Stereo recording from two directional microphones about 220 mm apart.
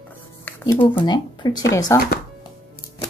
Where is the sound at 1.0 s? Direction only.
20° left (ahead or behind).